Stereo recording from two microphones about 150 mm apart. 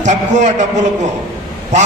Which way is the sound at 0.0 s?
50° right (ahead or behind).